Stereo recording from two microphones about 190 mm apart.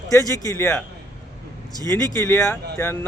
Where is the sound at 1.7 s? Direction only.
20° right (ahead or behind).